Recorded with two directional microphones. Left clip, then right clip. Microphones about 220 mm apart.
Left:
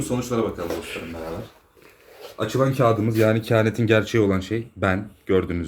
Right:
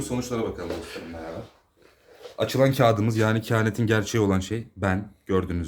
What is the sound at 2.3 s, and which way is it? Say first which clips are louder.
Speech: even; 45° right (ahead or behind).